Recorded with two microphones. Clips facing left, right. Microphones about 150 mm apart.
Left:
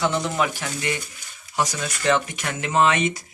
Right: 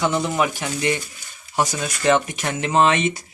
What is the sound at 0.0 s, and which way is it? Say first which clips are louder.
Speech: right 2 dB; 15° right (ahead or behind).